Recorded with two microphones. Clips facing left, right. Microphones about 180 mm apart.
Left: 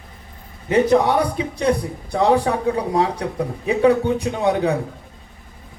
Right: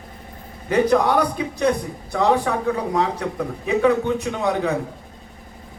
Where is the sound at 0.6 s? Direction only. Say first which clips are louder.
Left 2 dB; 25° left (ahead or behind).